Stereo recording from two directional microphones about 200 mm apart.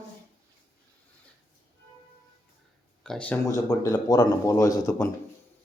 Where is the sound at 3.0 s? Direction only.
5° left (ahead or behind).